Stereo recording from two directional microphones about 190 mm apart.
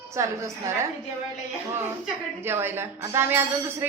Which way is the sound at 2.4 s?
10° right (ahead or behind).